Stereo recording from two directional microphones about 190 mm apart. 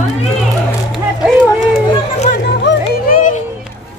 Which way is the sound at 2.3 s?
65° left (ahead or behind).